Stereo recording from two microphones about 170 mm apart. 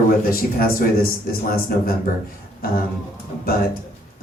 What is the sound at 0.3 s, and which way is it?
Speech, 60° left (ahead or behind).